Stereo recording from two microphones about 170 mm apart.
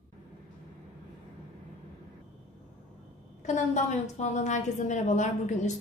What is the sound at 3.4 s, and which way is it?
A woman's voice, 45° left (ahead or behind).